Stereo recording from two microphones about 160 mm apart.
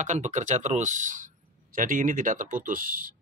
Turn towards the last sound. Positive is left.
turn(degrees=-60)  # may be behind; listen again after turning